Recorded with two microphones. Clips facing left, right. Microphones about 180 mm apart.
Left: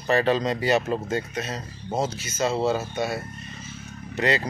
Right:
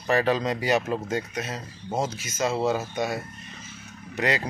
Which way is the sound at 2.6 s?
15° right (ahead or behind).